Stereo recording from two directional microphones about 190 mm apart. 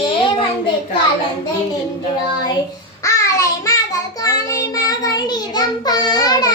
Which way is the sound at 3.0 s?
15° left (ahead or behind).